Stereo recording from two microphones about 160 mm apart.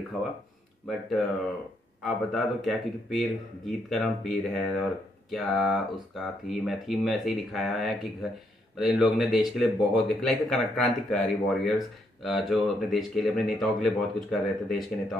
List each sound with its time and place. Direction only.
2.0 s speech: centre (ahead or behind)